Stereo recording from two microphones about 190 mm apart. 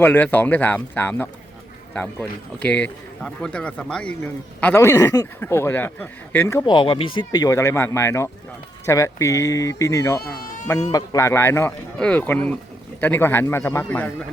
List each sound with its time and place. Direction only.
0.0 s a man's voice: 10° left (ahead or behind)
10.4 s a sound: 45° left (ahead or behind)
10.9 s a man's voice: 15° left (ahead or behind)